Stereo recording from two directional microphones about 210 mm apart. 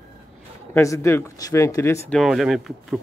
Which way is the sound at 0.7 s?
15° left (ahead or behind).